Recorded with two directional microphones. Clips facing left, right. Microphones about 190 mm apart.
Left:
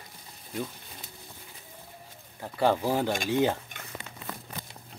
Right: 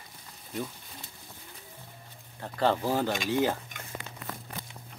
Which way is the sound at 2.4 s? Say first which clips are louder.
Left 2 dB; 10° left (ahead or behind).